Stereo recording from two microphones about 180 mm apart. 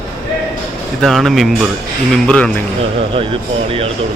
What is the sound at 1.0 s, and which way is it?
A man's voice, centre (ahead or behind).